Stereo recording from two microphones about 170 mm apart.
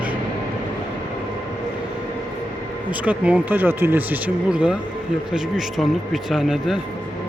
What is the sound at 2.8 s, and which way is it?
Speech, 10° right (ahead or behind).